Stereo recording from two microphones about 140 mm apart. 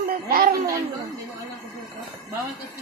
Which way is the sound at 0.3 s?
90° right.